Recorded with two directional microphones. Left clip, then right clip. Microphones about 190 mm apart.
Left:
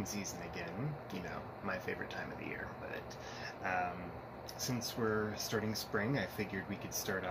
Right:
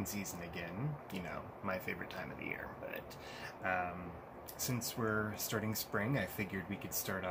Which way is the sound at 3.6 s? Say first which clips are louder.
Even; 15° right (ahead or behind).